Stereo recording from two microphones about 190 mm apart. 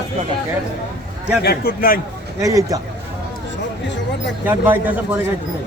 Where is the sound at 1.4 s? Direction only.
55° left (ahead or behind).